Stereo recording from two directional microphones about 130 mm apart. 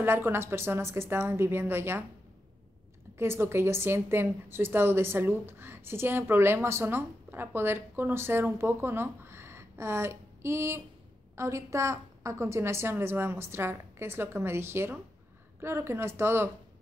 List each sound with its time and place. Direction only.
0.0 s a woman's voice: 20° right (ahead or behind)
3.2 s a woman's voice: 20° right (ahead or behind)